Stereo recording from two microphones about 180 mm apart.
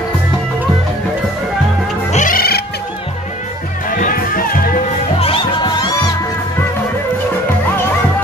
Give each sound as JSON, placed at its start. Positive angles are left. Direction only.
{"t": 2.1, "sound": "cat", "side_deg": 50}
{"t": 3.9, "sound": "music", "side_deg": 50}
{"t": 5.2, "sound": "music", "side_deg": 25}